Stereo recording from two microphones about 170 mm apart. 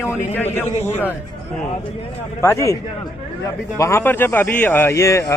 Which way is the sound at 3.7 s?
15° left (ahead or behind).